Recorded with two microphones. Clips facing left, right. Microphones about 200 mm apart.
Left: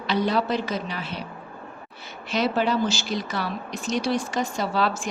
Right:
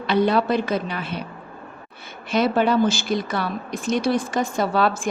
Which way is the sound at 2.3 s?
55° right (ahead or behind).